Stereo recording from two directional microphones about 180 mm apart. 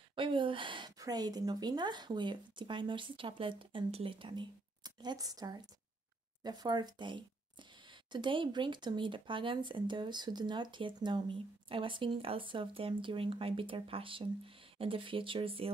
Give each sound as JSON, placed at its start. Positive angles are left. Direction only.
{"t": 0.1, "sound": "speech", "side_deg": -30}